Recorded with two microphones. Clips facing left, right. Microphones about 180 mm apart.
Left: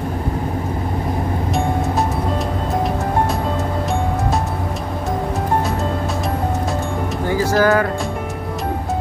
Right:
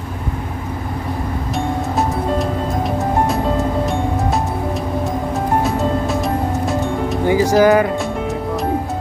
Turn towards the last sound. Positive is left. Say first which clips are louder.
# right 3 dB
turn(degrees=-15)  # may be behind; listen again after turning